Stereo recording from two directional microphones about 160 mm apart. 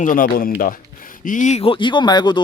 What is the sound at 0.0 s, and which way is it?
Speech, 60° left (ahead or behind).